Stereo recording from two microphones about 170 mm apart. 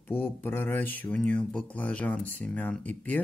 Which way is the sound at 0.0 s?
10° left (ahead or behind).